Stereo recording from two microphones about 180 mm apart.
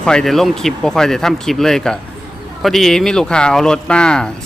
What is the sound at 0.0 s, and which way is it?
Speech, 5° left (ahead or behind).